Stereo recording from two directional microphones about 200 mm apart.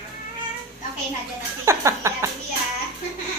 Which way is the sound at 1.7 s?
15° right (ahead or behind).